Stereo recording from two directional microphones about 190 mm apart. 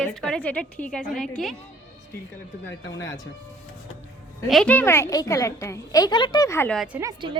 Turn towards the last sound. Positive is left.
turn(degrees=-15)  # may be behind; listen again after turning